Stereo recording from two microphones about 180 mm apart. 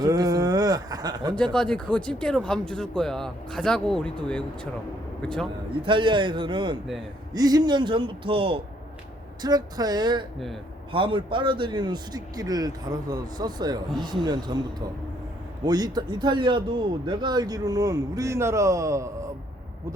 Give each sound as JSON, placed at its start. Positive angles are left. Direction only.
{"t": 0.0, "sound": "a sound", "side_deg": -20}
{"t": 1.4, "sound": "speech", "side_deg": 5}
{"t": 5.8, "sound": "a man's voice", "side_deg": -25}